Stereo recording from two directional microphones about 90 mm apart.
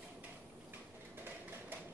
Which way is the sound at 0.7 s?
25° right (ahead or behind).